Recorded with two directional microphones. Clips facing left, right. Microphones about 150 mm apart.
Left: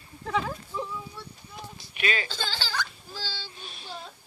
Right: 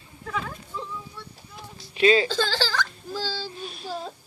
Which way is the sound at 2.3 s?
45° right (ahead or behind).